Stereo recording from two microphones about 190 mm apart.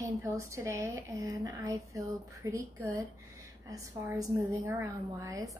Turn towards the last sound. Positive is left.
turn(degrees=-15)  # may be behind; listen again after turning